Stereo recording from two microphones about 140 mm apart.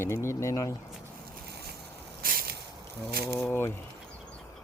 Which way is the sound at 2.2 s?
90° right.